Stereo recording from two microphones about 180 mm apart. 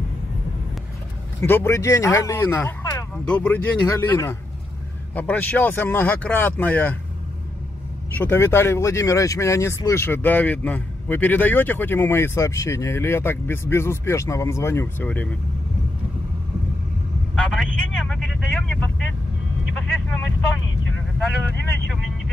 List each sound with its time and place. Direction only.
1.4 s speech: 15° left (ahead or behind)
8.2 s speech: 10° left (ahead or behind)
17.4 s speech: 5° left (ahead or behind)